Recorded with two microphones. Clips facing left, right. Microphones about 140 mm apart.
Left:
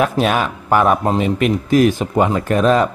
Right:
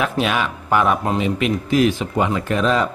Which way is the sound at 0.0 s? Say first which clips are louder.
Left 4 dB; 40° left (ahead or behind).